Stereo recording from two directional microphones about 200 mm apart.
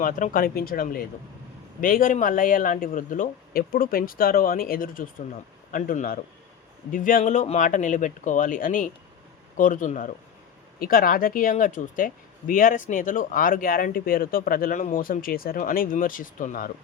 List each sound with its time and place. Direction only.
0.0 s speech: 40° left (ahead or behind)